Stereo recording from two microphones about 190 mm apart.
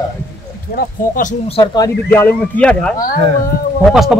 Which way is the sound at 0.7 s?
45° left (ahead or behind).